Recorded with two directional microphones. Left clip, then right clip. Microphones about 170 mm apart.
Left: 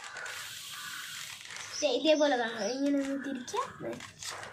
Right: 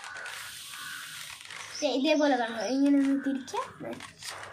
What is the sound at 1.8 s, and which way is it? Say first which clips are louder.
A child's voice: even; 20° right (ahead or behind).